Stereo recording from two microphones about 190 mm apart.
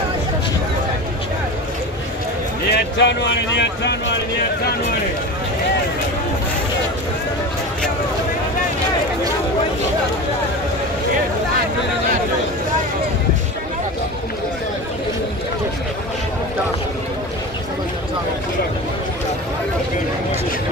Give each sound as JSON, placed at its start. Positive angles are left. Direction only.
{"t": 2.7, "sound": "speech", "side_deg": 65}